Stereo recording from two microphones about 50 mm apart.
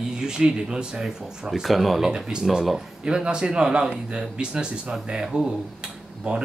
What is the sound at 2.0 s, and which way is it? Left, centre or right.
Speech, centre.